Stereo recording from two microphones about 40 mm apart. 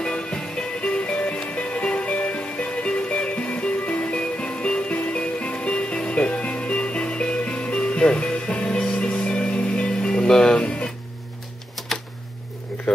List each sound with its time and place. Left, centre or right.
0.0 s music: left